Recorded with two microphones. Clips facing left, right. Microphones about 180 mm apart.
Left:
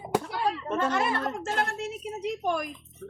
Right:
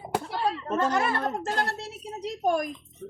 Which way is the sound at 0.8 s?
35° right (ahead or behind).